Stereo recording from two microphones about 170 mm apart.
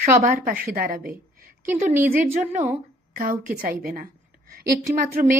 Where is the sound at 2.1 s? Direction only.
55° right (ahead or behind).